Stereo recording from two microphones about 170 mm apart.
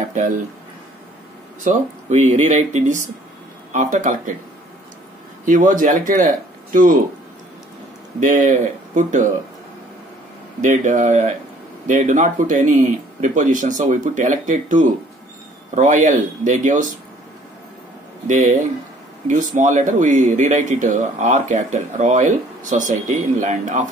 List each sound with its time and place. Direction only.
1.6 s a man's voice: 45° right (ahead or behind)
5.4 s speech: 50° right (ahead or behind)
8.2 s a man's voice: 50° right (ahead or behind)
10.6 s a man's voice: 45° right (ahead or behind)
18.2 s a man's voice: 50° right (ahead or behind)